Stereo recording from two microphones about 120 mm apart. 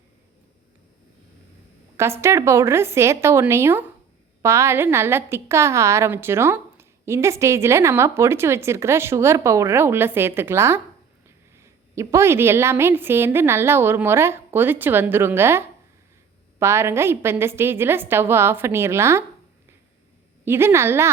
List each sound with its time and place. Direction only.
2.0 s a woman's voice: 20° right (ahead or behind)
20.4 s a woman's voice: 20° right (ahead or behind)